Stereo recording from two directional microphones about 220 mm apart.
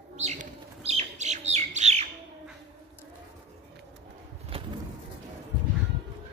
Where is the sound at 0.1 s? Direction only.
30° right (ahead or behind).